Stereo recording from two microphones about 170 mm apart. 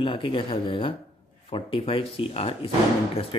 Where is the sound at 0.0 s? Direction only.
30° left (ahead or behind).